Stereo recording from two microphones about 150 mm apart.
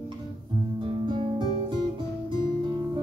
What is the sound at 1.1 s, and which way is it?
Music, 35° right (ahead or behind).